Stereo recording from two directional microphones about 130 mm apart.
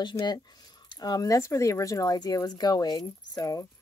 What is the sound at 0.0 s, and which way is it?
Speech, 35° left (ahead or behind).